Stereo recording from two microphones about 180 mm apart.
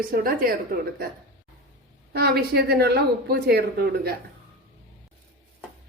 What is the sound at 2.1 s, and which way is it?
Speech, 60° right (ahead or behind).